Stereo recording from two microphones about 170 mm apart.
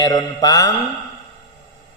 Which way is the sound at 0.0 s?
20° left (ahead or behind).